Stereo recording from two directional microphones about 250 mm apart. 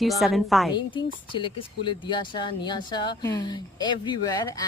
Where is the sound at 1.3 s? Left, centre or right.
Centre.